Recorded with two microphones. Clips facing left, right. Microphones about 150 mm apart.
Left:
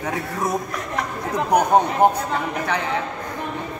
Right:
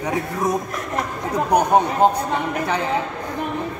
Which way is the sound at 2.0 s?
15° left (ahead or behind).